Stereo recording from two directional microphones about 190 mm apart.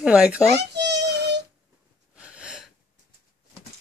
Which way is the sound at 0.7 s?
65° right (ahead or behind).